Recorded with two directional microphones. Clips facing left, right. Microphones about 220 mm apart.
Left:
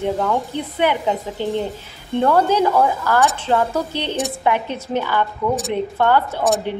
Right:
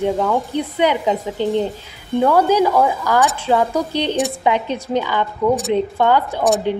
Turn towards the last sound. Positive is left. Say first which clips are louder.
# right 3 dB
turn(degrees=-15)  # may be behind; listen again after turning